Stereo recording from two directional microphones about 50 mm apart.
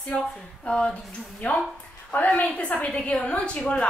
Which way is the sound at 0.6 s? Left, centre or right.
Left.